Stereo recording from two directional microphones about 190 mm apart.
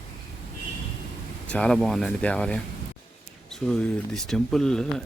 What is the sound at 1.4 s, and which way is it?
Speech, 5° left (ahead or behind).